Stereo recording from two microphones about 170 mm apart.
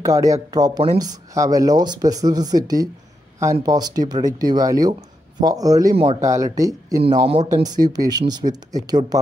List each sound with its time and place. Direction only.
0.0 s speech: 20° right (ahead or behind)